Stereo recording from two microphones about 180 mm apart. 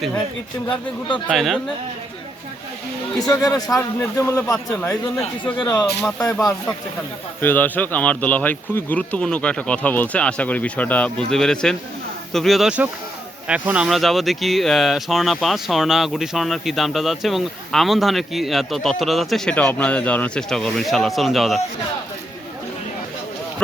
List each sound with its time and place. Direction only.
1.3 s speech: centre (ahead or behind)
3.2 s speech: 20° left (ahead or behind); by 21.6 s centre (ahead or behind)